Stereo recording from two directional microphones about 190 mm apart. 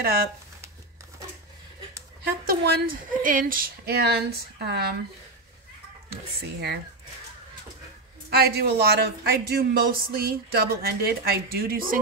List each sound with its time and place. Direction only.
0.0 s speech: 50° right (ahead or behind)
2.2 s speech: 55° right (ahead or behind)
8.3 s speech: 55° right (ahead or behind)